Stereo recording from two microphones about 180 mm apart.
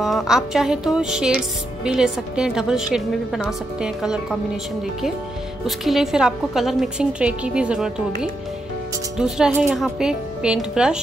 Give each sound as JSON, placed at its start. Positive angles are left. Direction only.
{"t": 0.0, "sound": "a woman's voice", "side_deg": 0}
{"t": 5.7, "sound": "a woman's voice", "side_deg": 0}